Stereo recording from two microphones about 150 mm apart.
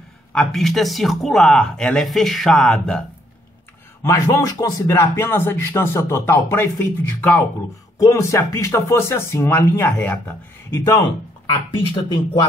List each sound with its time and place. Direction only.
0.3 s speech: 5° left (ahead or behind)
4.0 s speech: 20° left (ahead or behind)
11.7 s speech: 35° left (ahead or behind)